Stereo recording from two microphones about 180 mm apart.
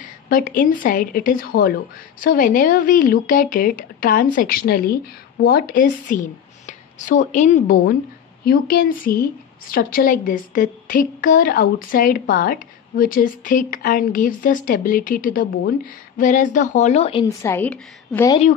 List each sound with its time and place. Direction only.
0.0 s a woman's voice: 45° left (ahead or behind); by 17.3 s 30° left (ahead or behind)
17.4 s a woman's voice: 10° left (ahead or behind)